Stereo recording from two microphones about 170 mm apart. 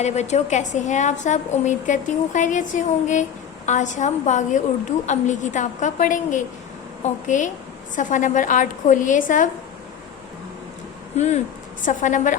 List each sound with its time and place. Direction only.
0.0 s a woman's voice: 40° left (ahead or behind)
11.1 s a woman's voice: 40° left (ahead or behind)